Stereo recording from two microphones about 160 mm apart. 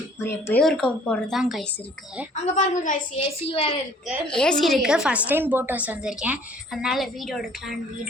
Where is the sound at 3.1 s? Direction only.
35° left (ahead or behind).